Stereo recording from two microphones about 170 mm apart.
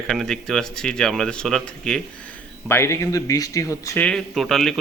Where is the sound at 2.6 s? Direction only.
15° left (ahead or behind).